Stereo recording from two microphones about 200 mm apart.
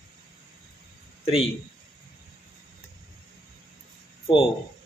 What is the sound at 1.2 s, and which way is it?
Speech, 30° left (ahead or behind).